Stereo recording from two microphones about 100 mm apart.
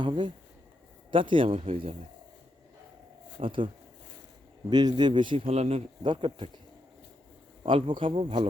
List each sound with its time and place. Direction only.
0.0 s a man's voice: 55° right (ahead or behind); by 2.0 s 70° right (ahead or behind)
3.4 s a man's voice: 60° right (ahead or behind)
4.7 s speech: 45° right (ahead or behind)
5.5 s speech: 90° right
6.0 s a man's voice: 55° right (ahead or behind)
7.6 s a man's voice: 65° right (ahead or behind)